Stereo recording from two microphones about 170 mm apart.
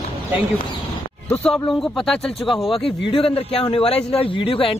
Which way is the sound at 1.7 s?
5° left (ahead or behind).